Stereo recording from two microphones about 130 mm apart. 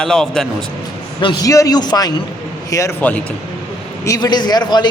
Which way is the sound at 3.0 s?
10° left (ahead or behind).